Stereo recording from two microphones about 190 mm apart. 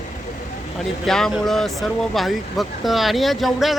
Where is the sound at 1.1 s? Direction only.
Centre (ahead or behind).